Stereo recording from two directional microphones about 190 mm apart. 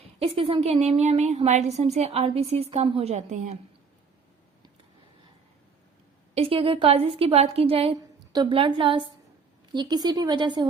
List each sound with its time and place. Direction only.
0.0 s a woman's voice: 30° right (ahead or behind)
6.3 s a woman's voice: 30° right (ahead or behind)